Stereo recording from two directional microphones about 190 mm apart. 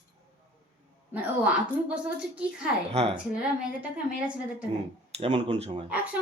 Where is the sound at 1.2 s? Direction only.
5° right (ahead or behind).